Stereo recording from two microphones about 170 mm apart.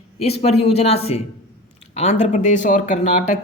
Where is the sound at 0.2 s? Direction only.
40° left (ahead or behind).